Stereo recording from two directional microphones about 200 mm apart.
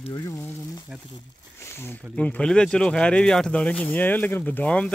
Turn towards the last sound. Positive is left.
turn(degrees=5)  # may be behind; listen again after turning